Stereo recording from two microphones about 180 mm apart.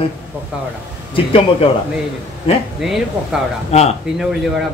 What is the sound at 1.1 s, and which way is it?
Speech, 30° left (ahead or behind).